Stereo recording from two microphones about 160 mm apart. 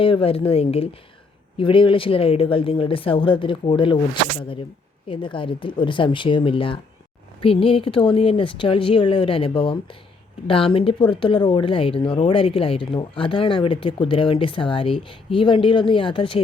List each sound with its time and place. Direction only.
0.0 s speech: 35° left (ahead or behind)